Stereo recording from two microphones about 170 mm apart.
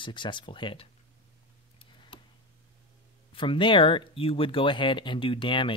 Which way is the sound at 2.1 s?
30° left (ahead or behind).